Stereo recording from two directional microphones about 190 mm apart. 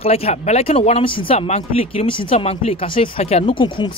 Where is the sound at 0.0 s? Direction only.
30° left (ahead or behind).